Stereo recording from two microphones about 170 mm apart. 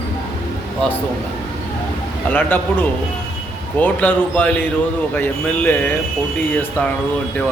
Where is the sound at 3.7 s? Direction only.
10° left (ahead or behind).